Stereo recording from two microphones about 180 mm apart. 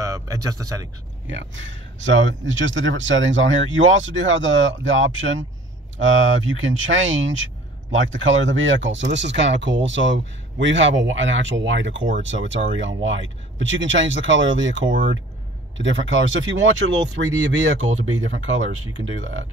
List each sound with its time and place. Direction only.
0.0 s a sound: 20° right (ahead or behind)
1.2 s speech: 90° right
16.1 s speech: 90° right